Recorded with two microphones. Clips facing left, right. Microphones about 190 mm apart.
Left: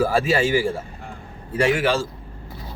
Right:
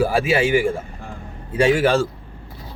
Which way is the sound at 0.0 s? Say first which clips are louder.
Right 1 dB; 15° right (ahead or behind).